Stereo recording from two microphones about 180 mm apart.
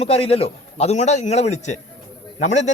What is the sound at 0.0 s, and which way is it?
A man's voice, 35° left (ahead or behind).